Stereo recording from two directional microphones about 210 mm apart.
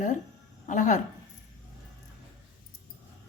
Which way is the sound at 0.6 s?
35° left (ahead or behind).